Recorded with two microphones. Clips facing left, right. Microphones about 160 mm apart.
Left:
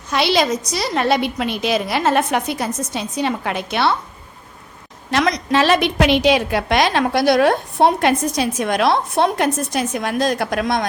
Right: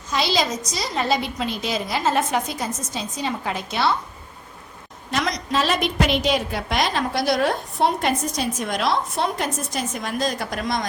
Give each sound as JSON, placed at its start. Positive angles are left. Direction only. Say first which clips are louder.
{"t": 0.1, "sound": "a woman's voice", "louder": "left 5 dB", "side_deg": 65}
{"t": 5.1, "sound": "a woman's voice", "louder": "left 6 dB", "side_deg": 70}